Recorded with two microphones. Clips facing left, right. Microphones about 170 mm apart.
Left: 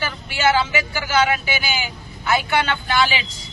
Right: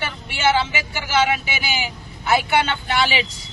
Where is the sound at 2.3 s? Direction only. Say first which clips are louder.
Right 1 dB; 25° right (ahead or behind).